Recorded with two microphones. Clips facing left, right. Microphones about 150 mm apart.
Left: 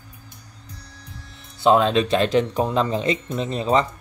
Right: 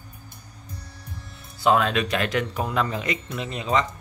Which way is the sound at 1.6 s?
25° left (ahead or behind).